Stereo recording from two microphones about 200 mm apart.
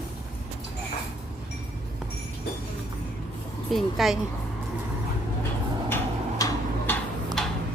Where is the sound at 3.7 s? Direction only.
Centre (ahead or behind).